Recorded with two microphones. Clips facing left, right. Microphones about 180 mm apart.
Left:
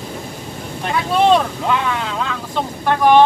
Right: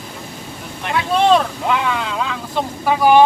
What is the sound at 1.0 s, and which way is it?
Speech, centre (ahead or behind).